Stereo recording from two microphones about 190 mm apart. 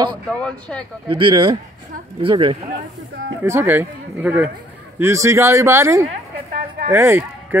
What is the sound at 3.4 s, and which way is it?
Speech, 10° right (ahead or behind).